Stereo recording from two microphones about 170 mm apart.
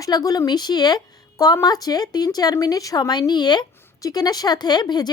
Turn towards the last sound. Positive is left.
turn(degrees=25)  # may be behind; listen again after turning